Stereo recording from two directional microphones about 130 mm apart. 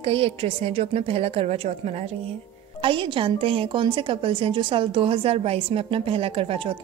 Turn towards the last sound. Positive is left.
turn(degrees=-45)  # may be behind; listen again after turning